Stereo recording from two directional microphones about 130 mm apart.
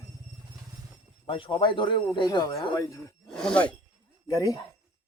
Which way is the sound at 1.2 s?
40° left (ahead or behind).